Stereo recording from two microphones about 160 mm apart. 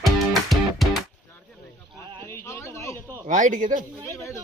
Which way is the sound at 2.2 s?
15° left (ahead or behind).